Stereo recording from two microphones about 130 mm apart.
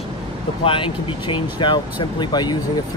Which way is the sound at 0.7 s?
40° left (ahead or behind).